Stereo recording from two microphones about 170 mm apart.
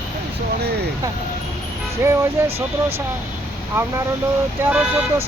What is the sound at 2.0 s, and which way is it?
Speech, 15° right (ahead or behind).